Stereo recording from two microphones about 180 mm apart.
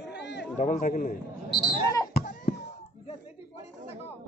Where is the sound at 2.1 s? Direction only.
55° left (ahead or behind).